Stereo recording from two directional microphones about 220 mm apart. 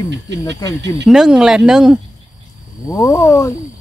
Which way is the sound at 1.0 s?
Centre (ahead or behind).